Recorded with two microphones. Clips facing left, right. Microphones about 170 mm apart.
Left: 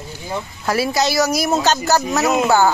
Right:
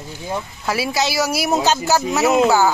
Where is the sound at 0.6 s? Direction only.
5° right (ahead or behind).